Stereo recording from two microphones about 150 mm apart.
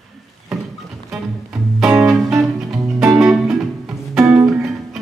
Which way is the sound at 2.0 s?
Centre (ahead or behind).